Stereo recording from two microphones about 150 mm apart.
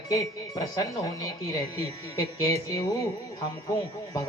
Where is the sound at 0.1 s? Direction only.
25° left (ahead or behind).